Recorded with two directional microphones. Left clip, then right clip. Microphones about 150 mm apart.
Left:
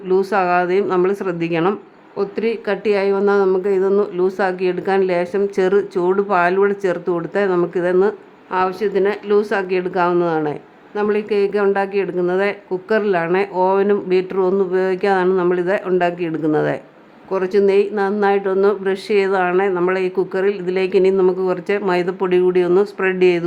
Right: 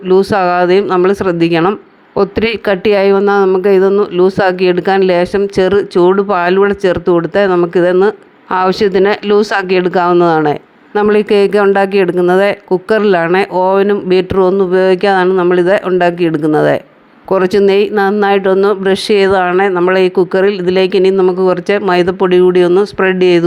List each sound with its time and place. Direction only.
0.1 s speech: 25° right (ahead or behind)
2.1 s speech: 45° right (ahead or behind)
3.2 s speech: 30° right (ahead or behind)
8.5 s speech: 45° right (ahead or behind)
17.2 s speech: 45° right (ahead or behind)